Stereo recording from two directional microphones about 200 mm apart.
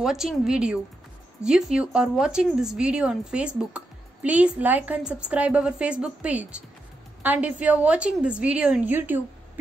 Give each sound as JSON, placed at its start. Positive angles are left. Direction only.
{"t": 0.0, "sound": "a woman's voice", "side_deg": 0}